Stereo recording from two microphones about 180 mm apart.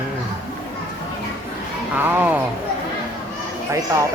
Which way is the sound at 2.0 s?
10° right (ahead or behind).